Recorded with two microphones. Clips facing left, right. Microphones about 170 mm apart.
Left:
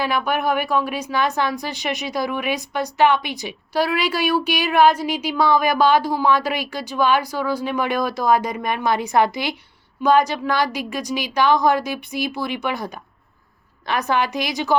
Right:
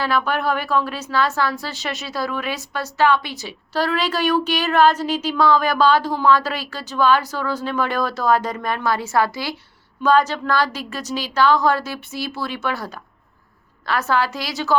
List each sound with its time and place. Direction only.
0.0 s speech: 15° left (ahead or behind)